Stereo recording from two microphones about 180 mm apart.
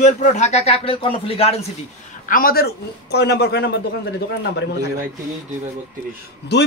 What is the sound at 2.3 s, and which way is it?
A man's voice, 50° left (ahead or behind).